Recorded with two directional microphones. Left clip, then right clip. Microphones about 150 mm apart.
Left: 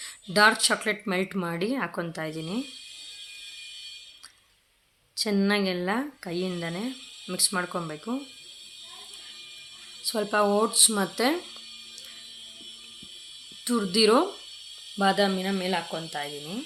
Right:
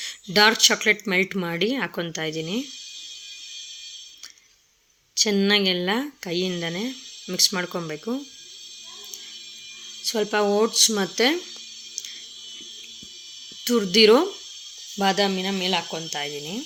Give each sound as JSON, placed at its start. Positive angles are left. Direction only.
{"t": 0.0, "sound": "speech", "side_deg": -15}
{"t": 5.1, "sound": "speech", "side_deg": -15}
{"t": 10.0, "sound": "speech", "side_deg": -10}
{"t": 13.7, "sound": "speech", "side_deg": -15}